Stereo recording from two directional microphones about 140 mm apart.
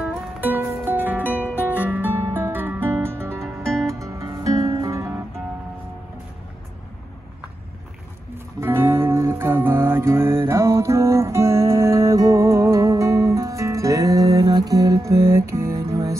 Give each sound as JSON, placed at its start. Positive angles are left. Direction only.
{"t": 0.4, "sound": "music", "side_deg": -15}
{"t": 3.6, "sound": "music", "side_deg": 5}
{"t": 4.0, "sound": "music", "side_deg": -25}
{"t": 8.5, "sound": "music", "side_deg": -20}